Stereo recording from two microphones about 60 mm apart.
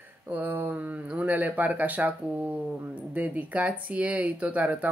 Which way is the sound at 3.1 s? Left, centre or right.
Right.